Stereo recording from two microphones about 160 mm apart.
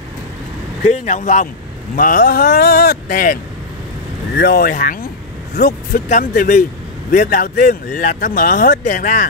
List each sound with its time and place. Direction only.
1.0 s speech: 50° left (ahead or behind)
4.4 s speech: 70° left (ahead or behind)
5.6 s speech: 85° left
6.0 s speech: 55° left (ahead or behind)